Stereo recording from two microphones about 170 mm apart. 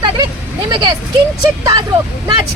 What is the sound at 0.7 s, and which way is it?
Speech, 25° right (ahead or behind).